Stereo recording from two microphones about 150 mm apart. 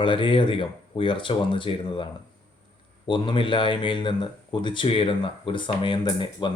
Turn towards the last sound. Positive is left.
turn(degrees=30)  # may be behind; listen again after turning